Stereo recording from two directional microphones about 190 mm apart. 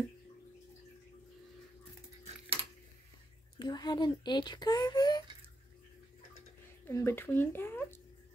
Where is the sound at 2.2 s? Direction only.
30° right (ahead or behind).